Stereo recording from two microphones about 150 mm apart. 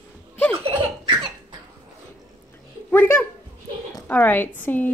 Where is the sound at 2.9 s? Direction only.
15° left (ahead or behind).